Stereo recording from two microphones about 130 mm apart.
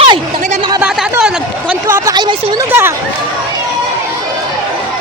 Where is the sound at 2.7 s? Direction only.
20° right (ahead or behind).